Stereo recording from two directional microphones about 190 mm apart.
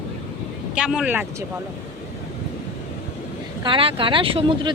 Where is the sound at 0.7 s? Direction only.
5° right (ahead or behind).